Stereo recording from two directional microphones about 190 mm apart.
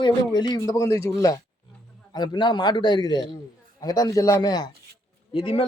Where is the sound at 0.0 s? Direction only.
20° left (ahead or behind).